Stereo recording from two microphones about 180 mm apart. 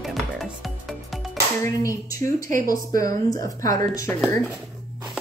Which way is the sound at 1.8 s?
20° left (ahead or behind).